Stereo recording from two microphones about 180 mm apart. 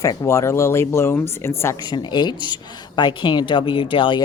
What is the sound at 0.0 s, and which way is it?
Speech, 15° left (ahead or behind).